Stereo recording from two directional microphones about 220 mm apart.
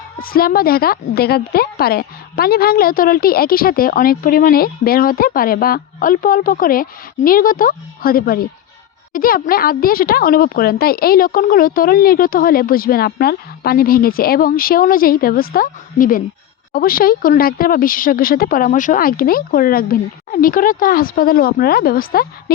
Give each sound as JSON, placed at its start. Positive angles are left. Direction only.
{"t": 0.2, "sound": "speech", "side_deg": 40}